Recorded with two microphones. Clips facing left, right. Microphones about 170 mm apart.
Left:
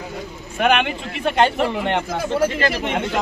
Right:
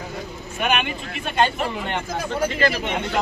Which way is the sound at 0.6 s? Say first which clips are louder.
Left 5 dB; 70° left (ahead or behind).